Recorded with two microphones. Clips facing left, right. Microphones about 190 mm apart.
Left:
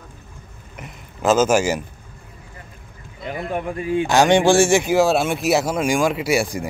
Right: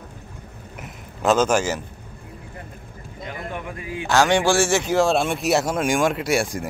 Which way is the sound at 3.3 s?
25° left (ahead or behind).